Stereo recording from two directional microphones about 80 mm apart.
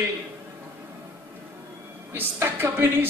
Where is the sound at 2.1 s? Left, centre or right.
Right.